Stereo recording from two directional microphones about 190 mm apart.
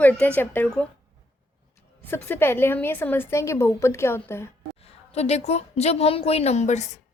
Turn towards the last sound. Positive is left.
turn(degrees=35)  # may be behind; listen again after turning